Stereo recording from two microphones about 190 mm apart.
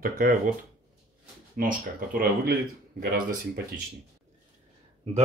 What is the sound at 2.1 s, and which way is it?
Speech, 50° right (ahead or behind).